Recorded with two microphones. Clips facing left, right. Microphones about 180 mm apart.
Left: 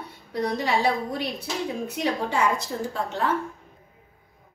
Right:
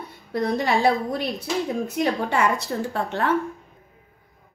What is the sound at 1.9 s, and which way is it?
Speech, 65° right (ahead or behind).